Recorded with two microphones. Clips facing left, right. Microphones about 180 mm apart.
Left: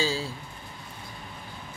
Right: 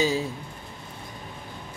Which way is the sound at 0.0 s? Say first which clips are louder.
Right 4 dB; 20° right (ahead or behind).